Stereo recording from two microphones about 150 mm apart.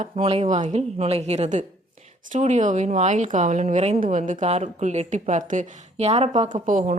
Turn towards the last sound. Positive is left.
turn(degrees=-60)  # may be behind; listen again after turning